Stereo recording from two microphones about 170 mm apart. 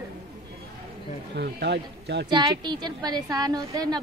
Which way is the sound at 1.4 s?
75° right (ahead or behind).